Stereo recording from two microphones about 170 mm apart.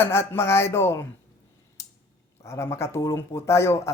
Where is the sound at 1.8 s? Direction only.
20° left (ahead or behind).